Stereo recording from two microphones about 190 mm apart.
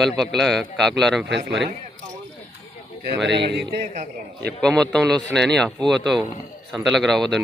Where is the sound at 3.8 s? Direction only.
40° right (ahead or behind).